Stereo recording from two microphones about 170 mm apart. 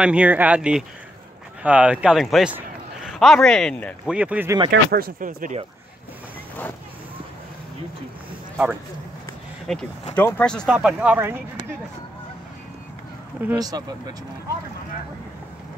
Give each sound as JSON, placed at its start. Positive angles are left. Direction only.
{"t": 0.0, "sound": "a man's voice", "side_deg": -5}
{"t": 4.1, "sound": "speech", "side_deg": -10}
{"t": 4.6, "sound": "speech", "side_deg": -60}
{"t": 9.7, "sound": "speech", "side_deg": 5}
{"t": 10.7, "sound": "speech", "side_deg": -5}
{"t": 13.6, "sound": "speech", "side_deg": -20}